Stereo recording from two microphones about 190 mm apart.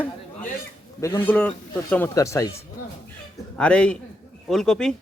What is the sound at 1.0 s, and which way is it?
A man's voice, 10° left (ahead or behind).